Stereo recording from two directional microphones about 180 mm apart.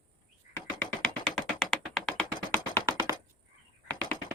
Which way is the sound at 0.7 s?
10° left (ahead or behind).